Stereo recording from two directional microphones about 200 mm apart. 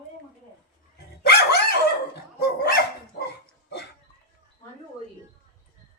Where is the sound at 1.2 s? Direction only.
50° left (ahead or behind).